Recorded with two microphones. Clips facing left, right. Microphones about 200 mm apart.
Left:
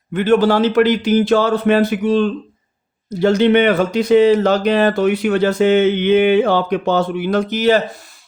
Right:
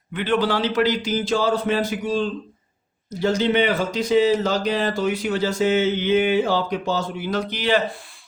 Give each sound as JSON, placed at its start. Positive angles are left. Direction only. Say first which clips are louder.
{"t": 0.1, "sound": "speech", "louder": "left 8 dB", "side_deg": 45}